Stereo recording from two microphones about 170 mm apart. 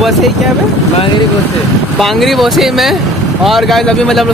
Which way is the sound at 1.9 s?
Centre (ahead or behind).